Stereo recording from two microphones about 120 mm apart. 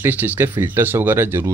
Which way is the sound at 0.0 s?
15° right (ahead or behind).